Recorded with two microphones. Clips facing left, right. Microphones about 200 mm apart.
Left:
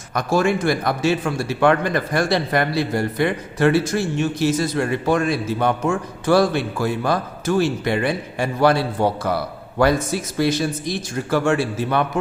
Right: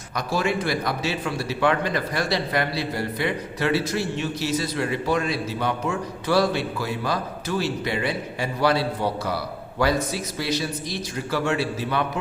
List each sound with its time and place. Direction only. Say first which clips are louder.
0.1 s a man's voice: left 6 dB; 50° left (ahead or behind)